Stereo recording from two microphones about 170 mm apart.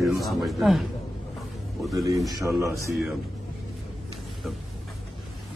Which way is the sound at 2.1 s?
20° right (ahead or behind).